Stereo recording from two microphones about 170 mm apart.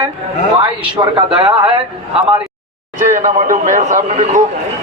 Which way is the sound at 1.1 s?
30° right (ahead or behind).